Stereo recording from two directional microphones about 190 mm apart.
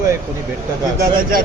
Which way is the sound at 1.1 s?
50° right (ahead or behind).